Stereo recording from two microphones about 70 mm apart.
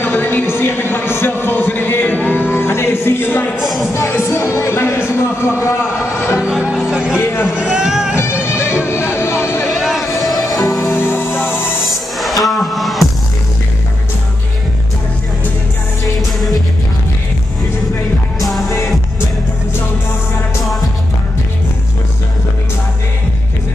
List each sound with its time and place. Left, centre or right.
0.0 s a sound: left
3.5 s music: centre
3.9 s music: left
6.4 s music: centre
7.5 s a sound: centre
8.5 s music: left
9.7 s a sound: centre
10.5 s music: centre
11.0 s music: left
11.8 s music: centre